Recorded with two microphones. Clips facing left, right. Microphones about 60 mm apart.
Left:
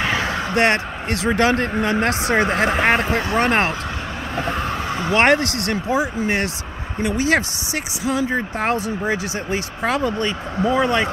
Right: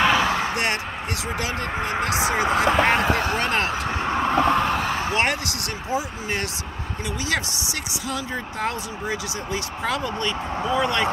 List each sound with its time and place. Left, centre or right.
0.6 s speech: left
1.3 s speech: left
4.1 s vehicle: right
5.1 s speech: left
8.4 s speech: left